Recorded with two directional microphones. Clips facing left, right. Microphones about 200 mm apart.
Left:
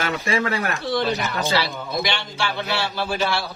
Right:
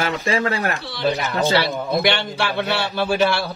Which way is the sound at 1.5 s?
60° right (ahead or behind).